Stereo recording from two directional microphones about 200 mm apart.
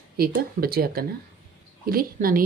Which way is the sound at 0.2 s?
50° right (ahead or behind).